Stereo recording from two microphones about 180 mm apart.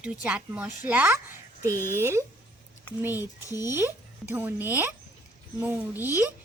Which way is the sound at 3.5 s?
20° left (ahead or behind).